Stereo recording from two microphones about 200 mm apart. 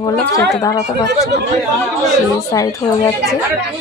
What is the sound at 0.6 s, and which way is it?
Speech, 15° left (ahead or behind).